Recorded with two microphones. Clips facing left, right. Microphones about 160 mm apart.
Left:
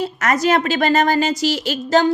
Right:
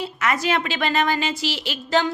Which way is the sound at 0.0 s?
40° left (ahead or behind).